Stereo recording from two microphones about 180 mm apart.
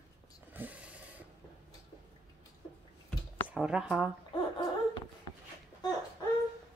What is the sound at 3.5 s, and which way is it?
Speech, 5° right (ahead or behind).